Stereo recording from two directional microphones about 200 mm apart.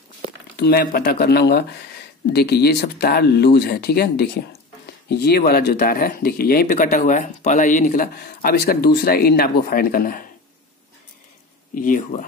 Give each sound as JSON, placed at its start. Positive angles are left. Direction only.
{"t": 0.6, "sound": "speech", "side_deg": 50}
{"t": 11.7, "sound": "speech", "side_deg": 40}